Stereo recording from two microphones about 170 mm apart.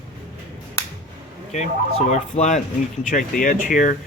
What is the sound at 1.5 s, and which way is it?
Speech, 45° left (ahead or behind).